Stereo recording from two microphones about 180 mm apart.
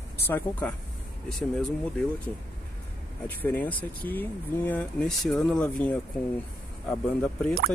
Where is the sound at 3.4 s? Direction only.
10° left (ahead or behind).